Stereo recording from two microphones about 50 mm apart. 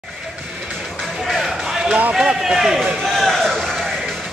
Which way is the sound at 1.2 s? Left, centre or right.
Centre.